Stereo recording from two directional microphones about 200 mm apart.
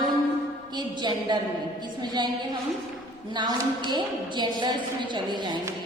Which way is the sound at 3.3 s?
20° right (ahead or behind).